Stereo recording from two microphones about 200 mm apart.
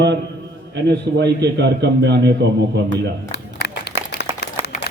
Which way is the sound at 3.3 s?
55° left (ahead or behind).